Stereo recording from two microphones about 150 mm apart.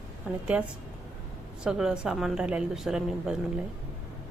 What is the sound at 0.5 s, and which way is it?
Speech, 5° right (ahead or behind).